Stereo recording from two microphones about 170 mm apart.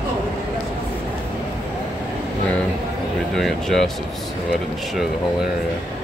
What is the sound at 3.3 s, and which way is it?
Speech, centre (ahead or behind).